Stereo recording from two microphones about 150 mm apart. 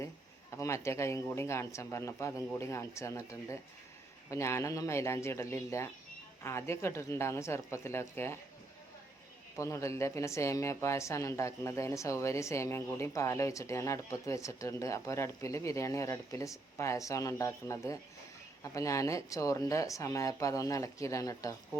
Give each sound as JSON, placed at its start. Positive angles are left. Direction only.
{"t": 0.5, "sound": "speech", "side_deg": 20}
{"t": 9.6, "sound": "speech", "side_deg": 20}